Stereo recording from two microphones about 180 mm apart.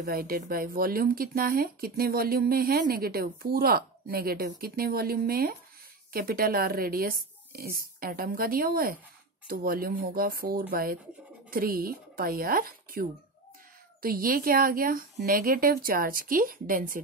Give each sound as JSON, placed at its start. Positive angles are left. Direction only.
{"t": 0.0, "sound": "a woman's voice", "side_deg": -55}